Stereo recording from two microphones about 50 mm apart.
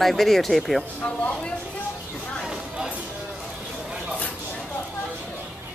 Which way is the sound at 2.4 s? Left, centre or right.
Centre.